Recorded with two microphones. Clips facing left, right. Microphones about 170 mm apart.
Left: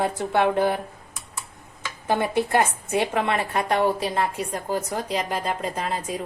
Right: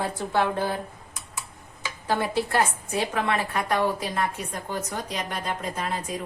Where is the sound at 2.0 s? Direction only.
20° left (ahead or behind).